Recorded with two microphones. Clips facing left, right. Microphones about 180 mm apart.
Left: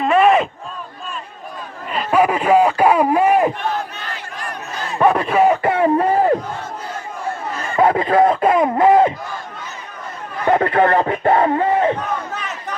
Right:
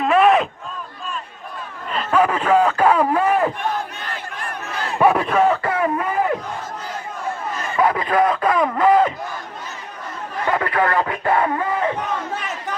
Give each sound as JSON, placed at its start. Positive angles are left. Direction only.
{"t": 0.0, "sound": "a sound", "side_deg": 0}
{"t": 1.9, "sound": "a man's voice", "side_deg": 10}
{"t": 4.9, "sound": "a sound", "side_deg": 0}
{"t": 5.6, "sound": "speech", "side_deg": 30}
{"t": 7.8, "sound": "speech", "side_deg": 30}
{"t": 10.4, "sound": "speech", "side_deg": 30}